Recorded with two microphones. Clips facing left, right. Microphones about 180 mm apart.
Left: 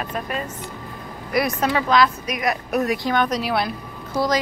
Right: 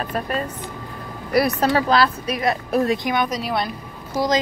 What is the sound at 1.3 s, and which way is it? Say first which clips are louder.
A woman's voice: right 3 dB; 35° right (ahead or behind).